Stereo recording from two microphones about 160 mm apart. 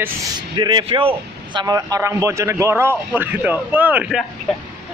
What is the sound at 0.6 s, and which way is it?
Speech, 30° right (ahead or behind).